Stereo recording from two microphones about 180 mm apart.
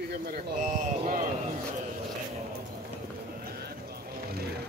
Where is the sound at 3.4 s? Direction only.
60° right (ahead or behind).